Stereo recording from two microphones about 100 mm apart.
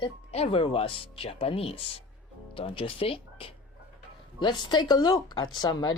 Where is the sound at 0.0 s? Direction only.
80° left.